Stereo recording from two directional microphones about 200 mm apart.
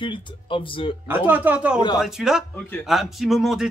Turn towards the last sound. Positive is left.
turn(degrees=0)  # may be behind; listen again after turning